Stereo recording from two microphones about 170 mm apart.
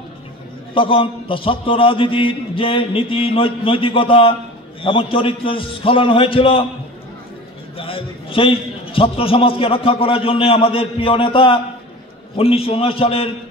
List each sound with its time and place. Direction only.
0.7 s a man's voice: 30° left (ahead or behind)
7.7 s a man's voice: 35° left (ahead or behind)